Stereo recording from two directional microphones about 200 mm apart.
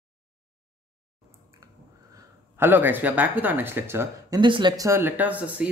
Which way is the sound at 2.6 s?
10° right (ahead or behind).